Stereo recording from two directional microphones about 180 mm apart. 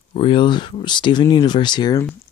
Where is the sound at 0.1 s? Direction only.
30° left (ahead or behind).